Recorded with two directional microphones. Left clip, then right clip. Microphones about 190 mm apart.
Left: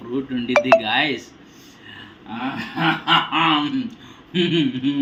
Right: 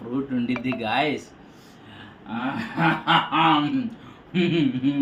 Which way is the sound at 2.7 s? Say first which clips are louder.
Left 2 dB; 20° right (ahead or behind).